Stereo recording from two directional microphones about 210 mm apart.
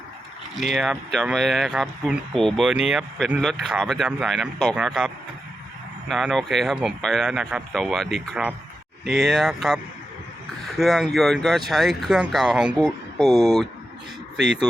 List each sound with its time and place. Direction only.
0.5 s speech: centre (ahead or behind)
13.3 s speech: 20° right (ahead or behind)